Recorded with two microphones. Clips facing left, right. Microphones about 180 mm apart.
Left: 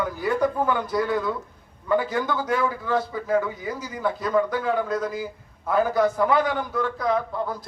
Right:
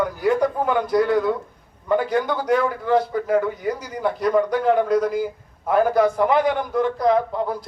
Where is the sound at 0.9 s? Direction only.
60° right (ahead or behind).